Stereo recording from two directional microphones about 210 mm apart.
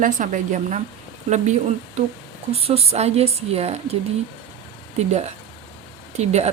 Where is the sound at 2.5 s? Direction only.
30° right (ahead or behind).